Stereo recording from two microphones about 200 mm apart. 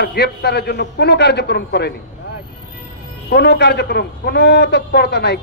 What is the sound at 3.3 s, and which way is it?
A man's voice, 55° left (ahead or behind).